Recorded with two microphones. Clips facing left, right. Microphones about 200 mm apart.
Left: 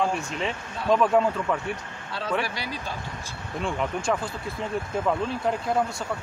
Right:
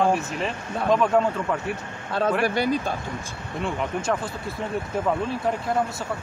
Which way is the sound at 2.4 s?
50° right (ahead or behind).